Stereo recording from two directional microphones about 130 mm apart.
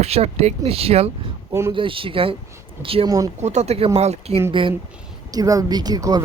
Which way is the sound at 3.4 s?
60° right (ahead or behind).